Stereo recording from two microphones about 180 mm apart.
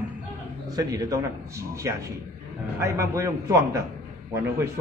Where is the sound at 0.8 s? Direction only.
20° right (ahead or behind).